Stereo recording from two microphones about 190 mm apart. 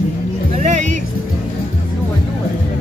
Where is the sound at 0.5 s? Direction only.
40° right (ahead or behind).